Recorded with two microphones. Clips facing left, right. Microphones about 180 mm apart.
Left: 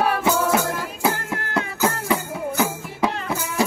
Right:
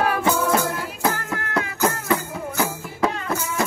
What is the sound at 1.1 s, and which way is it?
Music, 25° left (ahead or behind).